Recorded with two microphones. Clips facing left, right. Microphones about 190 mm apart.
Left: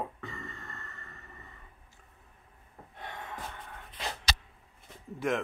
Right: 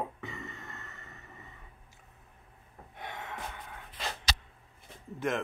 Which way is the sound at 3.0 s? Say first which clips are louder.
Right 1 dB; 10° right (ahead or behind).